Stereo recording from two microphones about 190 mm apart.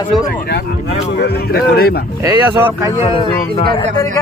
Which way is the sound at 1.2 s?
55° left (ahead or behind).